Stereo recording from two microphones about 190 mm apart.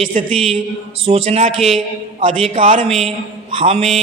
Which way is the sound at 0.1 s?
40° right (ahead or behind).